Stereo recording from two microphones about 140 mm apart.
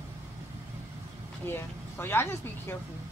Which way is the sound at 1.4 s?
15° left (ahead or behind).